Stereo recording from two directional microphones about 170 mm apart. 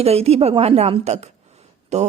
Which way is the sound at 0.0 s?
35° right (ahead or behind).